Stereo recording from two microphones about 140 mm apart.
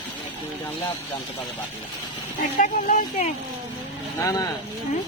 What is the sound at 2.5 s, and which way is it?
Speech, 65° left (ahead or behind).